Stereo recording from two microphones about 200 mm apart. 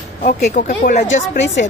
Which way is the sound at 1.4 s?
65° left (ahead or behind).